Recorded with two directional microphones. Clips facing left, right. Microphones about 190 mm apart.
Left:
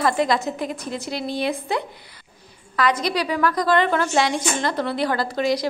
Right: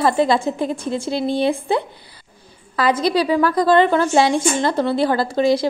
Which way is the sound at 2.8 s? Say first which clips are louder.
Right 4 dB; 30° right (ahead or behind).